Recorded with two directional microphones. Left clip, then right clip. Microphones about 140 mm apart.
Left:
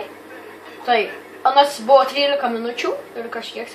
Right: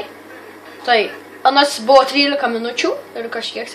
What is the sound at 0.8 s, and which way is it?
A woman's voice, 70° right (ahead or behind).